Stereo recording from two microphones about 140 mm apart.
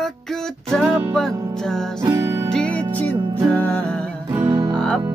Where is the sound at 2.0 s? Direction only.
20° right (ahead or behind).